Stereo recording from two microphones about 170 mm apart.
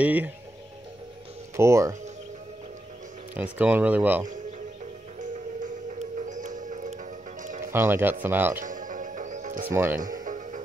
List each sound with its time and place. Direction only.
0.0 s speech: 10° right (ahead or behind)
1.6 s speech: 15° right (ahead or behind)
3.5 s speech: 10° right (ahead or behind)
5.2 s music: 50° right (ahead or behind)
7.6 s speech: 15° right (ahead or behind)
8.5 s music: 50° right (ahead or behind)
9.7 s speech: 15° right (ahead or behind)
9.9 s music: 50° right (ahead or behind)